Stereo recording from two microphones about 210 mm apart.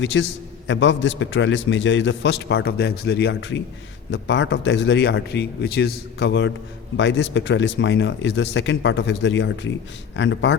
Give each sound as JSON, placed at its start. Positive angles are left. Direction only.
{"t": 0.0, "sound": "a man's voice", "side_deg": 65}